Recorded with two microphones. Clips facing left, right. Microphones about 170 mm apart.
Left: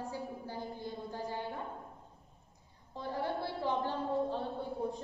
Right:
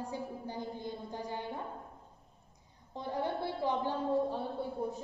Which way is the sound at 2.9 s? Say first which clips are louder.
Right 1 dB; 20° right (ahead or behind).